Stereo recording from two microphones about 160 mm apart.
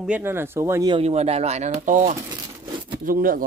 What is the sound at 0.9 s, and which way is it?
Speech, 40° right (ahead or behind).